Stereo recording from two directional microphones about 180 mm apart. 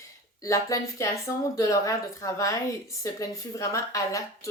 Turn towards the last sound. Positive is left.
turn(degrees=20)  # may be behind; listen again after turning